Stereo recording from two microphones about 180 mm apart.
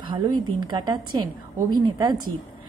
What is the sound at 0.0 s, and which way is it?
A woman's voice, 25° right (ahead or behind).